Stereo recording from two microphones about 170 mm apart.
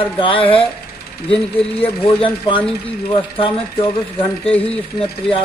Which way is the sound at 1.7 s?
35° left (ahead or behind).